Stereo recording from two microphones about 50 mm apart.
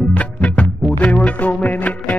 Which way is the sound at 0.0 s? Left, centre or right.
Left.